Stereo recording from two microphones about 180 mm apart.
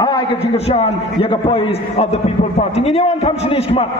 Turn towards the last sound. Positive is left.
turn(degrees=35)  # may be behind; listen again after turning